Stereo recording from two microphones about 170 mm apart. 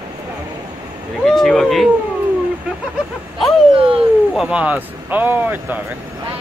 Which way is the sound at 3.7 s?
30° right (ahead or behind).